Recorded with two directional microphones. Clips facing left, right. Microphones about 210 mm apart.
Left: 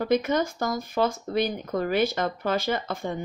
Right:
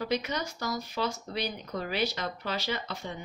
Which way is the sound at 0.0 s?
50° left (ahead or behind).